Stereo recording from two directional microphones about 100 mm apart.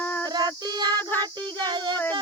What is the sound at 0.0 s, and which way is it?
Child singing, 15° left (ahead or behind).